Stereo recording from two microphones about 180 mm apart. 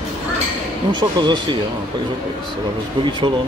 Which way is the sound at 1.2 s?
25° right (ahead or behind).